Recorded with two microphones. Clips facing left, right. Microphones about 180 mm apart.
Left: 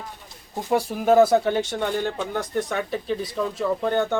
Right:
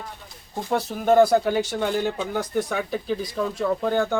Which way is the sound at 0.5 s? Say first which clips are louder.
Left 2 dB; 10° left (ahead or behind).